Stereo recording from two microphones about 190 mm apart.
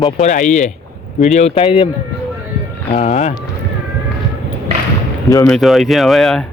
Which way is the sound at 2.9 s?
35° left (ahead or behind).